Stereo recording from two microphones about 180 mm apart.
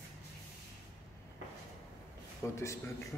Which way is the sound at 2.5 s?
15° left (ahead or behind).